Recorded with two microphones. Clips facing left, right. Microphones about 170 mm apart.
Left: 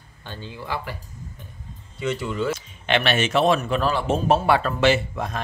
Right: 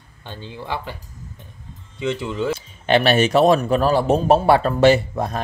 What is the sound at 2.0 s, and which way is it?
Speech, 20° right (ahead or behind).